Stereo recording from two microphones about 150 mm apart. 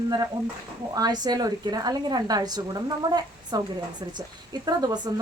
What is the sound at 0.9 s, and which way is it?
A woman's voice, 25° right (ahead or behind).